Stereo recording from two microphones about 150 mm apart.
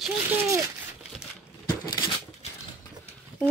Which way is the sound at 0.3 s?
20° right (ahead or behind).